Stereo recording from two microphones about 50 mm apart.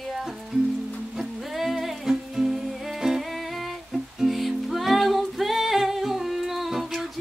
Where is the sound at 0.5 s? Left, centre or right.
Centre.